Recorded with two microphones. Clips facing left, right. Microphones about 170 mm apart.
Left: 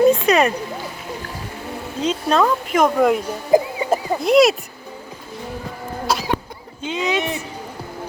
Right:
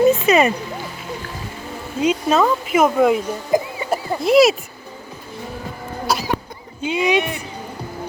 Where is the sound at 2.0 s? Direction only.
5° right (ahead or behind).